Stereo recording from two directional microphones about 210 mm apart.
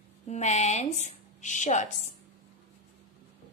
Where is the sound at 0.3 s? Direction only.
35° left (ahead or behind).